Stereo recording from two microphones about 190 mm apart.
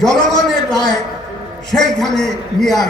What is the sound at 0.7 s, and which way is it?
Speech, 20° left (ahead or behind).